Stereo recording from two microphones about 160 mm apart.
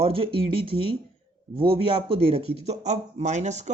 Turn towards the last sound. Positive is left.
turn(degrees=-45)  # may be behind; listen again after turning